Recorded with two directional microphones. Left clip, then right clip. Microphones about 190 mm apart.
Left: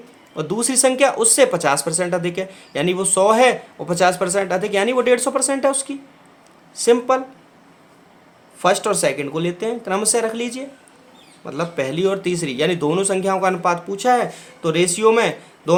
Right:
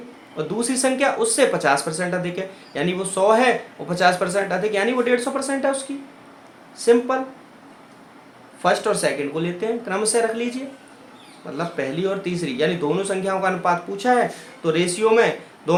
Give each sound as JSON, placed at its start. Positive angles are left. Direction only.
{"t": 0.3, "sound": "speech", "side_deg": 45}
{"t": 8.6, "sound": "speech", "side_deg": 45}